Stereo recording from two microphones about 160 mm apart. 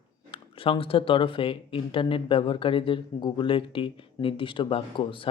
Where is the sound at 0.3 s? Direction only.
35° left (ahead or behind).